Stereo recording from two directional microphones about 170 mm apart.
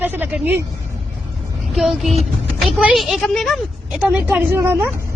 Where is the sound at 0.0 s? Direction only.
10° right (ahead or behind).